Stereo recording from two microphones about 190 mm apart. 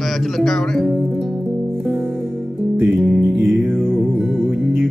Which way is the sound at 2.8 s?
Centre (ahead or behind).